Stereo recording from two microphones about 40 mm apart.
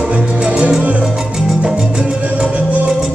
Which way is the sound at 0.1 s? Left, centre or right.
Right.